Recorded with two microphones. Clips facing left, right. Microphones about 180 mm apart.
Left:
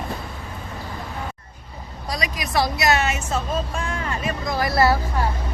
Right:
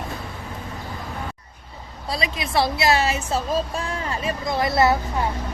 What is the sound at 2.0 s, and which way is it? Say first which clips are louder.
A woman's voice: right 1 dB; 25° right (ahead or behind).